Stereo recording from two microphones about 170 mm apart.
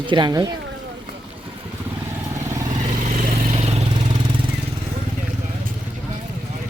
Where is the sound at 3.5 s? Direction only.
40° right (ahead or behind).